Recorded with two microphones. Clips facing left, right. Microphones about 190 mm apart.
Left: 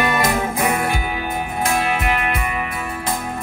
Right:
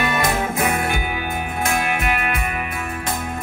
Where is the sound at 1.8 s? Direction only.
35° left (ahead or behind).